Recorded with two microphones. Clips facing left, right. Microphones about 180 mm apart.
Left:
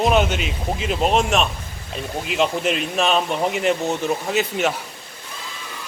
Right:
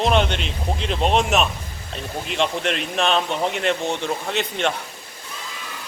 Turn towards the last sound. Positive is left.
turn(degrees=5)  # may be behind; listen again after turning